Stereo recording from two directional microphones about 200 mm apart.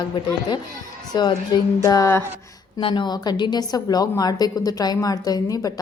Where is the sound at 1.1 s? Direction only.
20° left (ahead or behind).